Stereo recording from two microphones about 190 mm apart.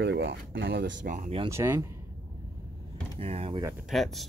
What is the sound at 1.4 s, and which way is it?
Speech, 15° right (ahead or behind).